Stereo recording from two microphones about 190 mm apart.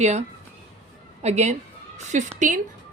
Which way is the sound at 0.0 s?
35° right (ahead or behind).